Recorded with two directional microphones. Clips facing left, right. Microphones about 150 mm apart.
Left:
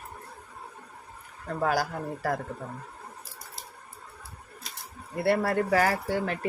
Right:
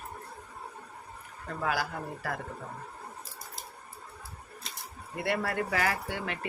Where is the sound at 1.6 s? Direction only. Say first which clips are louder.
Left 5 dB; 40° left (ahead or behind).